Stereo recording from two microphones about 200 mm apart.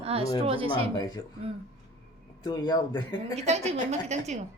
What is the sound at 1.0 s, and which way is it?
Speech, 20° left (ahead or behind).